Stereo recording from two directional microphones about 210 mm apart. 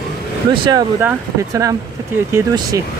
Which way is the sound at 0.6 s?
15° right (ahead or behind).